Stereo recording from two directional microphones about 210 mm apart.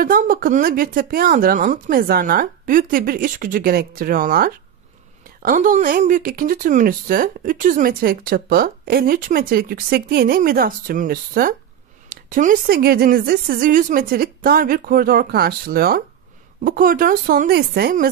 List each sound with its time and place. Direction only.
0.0 s speech: 45° right (ahead or behind)